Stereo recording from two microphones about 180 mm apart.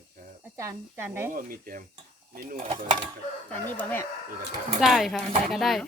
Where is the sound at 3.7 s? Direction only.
10° left (ahead or behind).